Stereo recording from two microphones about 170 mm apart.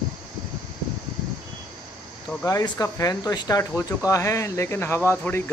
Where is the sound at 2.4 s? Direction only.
20° left (ahead or behind).